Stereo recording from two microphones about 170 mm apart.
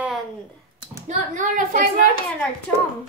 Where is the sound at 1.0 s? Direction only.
45° right (ahead or behind).